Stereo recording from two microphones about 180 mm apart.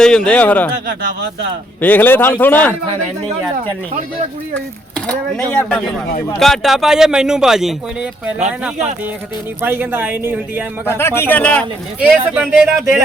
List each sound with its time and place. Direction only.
0.0 s speech: 5° left (ahead or behind)
1.8 s speech: 10° left (ahead or behind)
5.5 s speech: 5° left (ahead or behind)
9.6 s speech: 10° right (ahead or behind)
10.8 s speech: 15° left (ahead or behind)
11.9 s speech: 10° right (ahead or behind)